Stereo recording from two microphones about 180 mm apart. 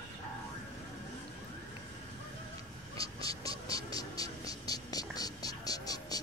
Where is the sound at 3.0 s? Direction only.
20° left (ahead or behind).